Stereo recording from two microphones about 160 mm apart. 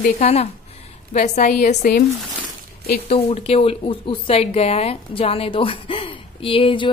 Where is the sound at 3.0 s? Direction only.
40° left (ahead or behind).